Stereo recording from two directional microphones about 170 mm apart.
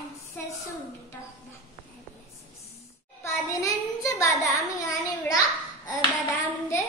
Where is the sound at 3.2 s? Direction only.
20° left (ahead or behind).